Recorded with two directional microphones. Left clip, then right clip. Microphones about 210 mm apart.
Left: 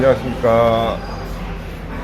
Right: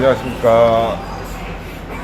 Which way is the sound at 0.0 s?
20° left (ahead or behind).